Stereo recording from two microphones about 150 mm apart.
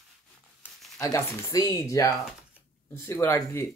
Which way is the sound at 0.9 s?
20° left (ahead or behind).